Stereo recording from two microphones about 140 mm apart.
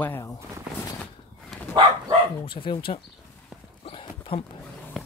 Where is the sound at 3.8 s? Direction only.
35° left (ahead or behind).